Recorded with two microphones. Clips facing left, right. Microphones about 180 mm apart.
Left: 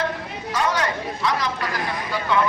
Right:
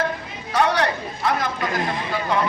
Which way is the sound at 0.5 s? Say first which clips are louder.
Right 3 dB; 65° right (ahead or behind).